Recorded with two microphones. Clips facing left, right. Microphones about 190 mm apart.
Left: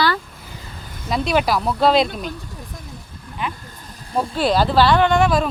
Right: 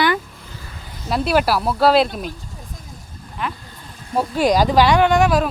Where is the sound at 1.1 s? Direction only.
5° right (ahead or behind).